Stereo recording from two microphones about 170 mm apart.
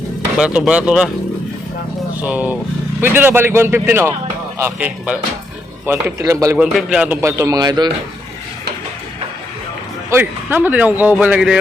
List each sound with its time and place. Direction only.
0.3 s speech: 5° right (ahead or behind)
2.2 s a man's voice: 10° right (ahead or behind)
6.6 s a man's voice: 5° right (ahead or behind); by 7.9 s 25° right (ahead or behind)
10.1 s a man's voice: 10° right (ahead or behind)